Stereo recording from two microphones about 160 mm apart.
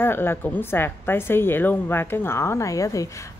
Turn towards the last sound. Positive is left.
turn(degrees=20)  # may be behind; listen again after turning